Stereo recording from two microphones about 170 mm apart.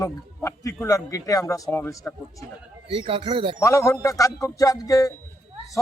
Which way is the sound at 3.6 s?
20° left (ahead or behind).